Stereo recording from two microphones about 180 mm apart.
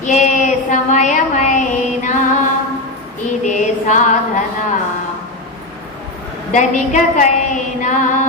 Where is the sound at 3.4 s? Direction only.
40° left (ahead or behind).